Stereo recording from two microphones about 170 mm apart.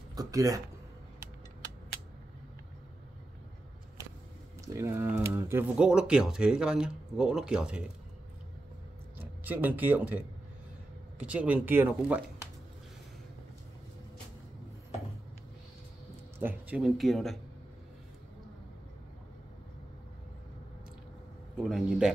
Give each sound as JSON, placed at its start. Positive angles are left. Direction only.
{"t": 0.1, "sound": "speech", "side_deg": -20}
{"t": 4.7, "sound": "speech", "side_deg": -15}
{"t": 9.4, "sound": "speech", "side_deg": -10}
{"t": 16.3, "sound": "speech", "side_deg": -10}
{"t": 21.6, "sound": "speech", "side_deg": 0}